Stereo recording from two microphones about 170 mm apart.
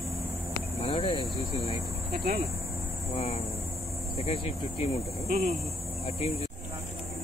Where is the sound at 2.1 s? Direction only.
65° right (ahead or behind).